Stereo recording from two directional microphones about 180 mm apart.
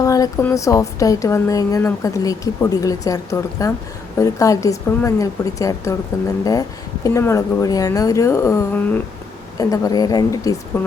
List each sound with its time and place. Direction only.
0.0 s a woman's voice: 20° left (ahead or behind)